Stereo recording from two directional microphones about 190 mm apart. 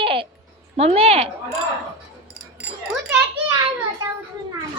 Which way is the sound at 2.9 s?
5° right (ahead or behind).